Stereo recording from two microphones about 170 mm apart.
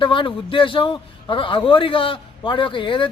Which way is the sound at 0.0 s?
30° left (ahead or behind).